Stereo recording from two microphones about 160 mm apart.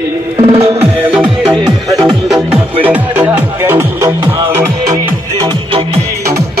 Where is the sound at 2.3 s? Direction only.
5° right (ahead or behind).